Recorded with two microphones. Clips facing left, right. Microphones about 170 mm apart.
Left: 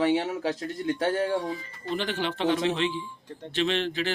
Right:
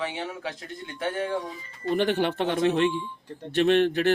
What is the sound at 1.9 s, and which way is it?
Speech, 55° right (ahead or behind).